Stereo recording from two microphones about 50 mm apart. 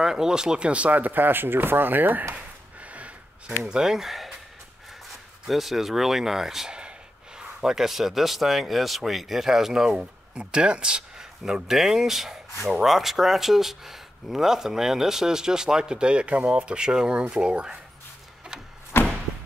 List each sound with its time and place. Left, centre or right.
0.0 s speech: centre; by 2.2 s right
2.3 s a sound: right
3.6 s speech: centre
5.5 s speech: centre
9.9 s speech: centre
18.9 s a sound: left